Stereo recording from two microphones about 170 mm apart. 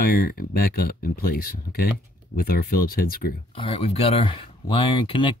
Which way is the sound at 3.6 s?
35° left (ahead or behind).